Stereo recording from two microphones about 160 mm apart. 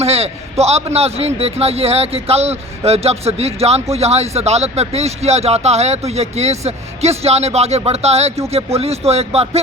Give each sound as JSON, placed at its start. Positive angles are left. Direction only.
{"t": 0.0, "sound": "a man's voice", "side_deg": -40}